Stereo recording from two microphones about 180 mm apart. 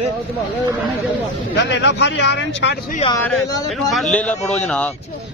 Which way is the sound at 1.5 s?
80° left.